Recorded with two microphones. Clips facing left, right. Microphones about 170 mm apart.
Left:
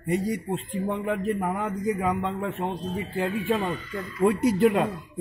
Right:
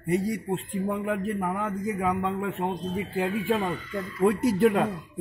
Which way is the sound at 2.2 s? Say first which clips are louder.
Right 1 dB; 10° right (ahead or behind).